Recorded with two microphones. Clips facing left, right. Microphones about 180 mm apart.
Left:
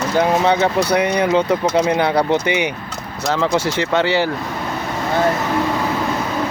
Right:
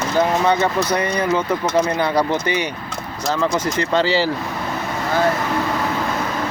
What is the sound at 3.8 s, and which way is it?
Speech, 60° left (ahead or behind).